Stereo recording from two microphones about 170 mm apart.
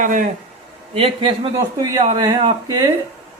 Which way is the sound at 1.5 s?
20° right (ahead or behind).